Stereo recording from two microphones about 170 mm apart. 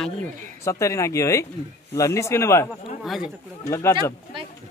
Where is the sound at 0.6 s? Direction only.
20° left (ahead or behind).